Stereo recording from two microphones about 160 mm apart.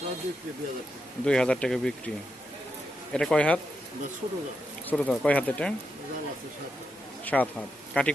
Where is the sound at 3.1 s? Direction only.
5° left (ahead or behind).